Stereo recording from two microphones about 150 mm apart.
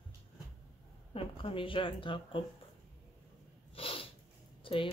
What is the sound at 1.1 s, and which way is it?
Speech, 35° left (ahead or behind).